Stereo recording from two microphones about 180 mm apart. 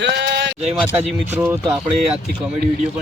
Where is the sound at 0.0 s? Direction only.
75° right (ahead or behind).